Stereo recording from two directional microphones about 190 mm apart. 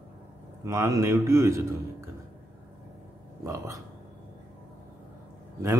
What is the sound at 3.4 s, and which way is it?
Speech, 15° right (ahead or behind).